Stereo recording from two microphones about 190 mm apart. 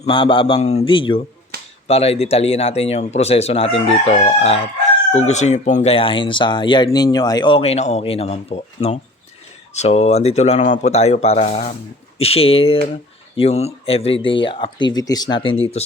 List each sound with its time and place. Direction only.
0.0 s speech: 25° left (ahead or behind)
1.5 s finger snapping: 50° right (ahead or behind)
1.9 s speech: 30° left (ahead or behind)